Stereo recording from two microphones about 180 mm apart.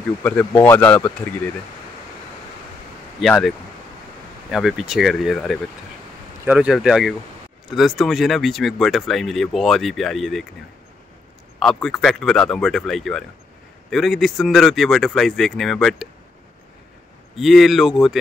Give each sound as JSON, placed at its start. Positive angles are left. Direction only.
{"t": 0.2, "sound": "speech", "side_deg": 10}
{"t": 3.2, "sound": "speech", "side_deg": 0}
{"t": 11.6, "sound": "speech", "side_deg": 0}
{"t": 17.4, "sound": "speech", "side_deg": 0}